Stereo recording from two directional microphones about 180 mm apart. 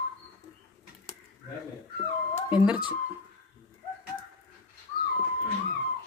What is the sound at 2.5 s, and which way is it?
Speech, 5° right (ahead or behind).